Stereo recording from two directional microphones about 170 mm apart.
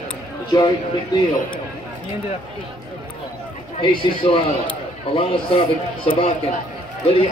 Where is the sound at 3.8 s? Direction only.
30° left (ahead or behind).